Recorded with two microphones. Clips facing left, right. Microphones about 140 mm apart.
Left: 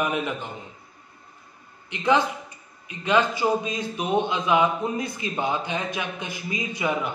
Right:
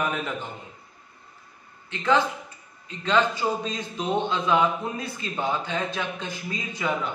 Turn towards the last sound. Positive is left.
turn(degrees=15)  # may be behind; listen again after turning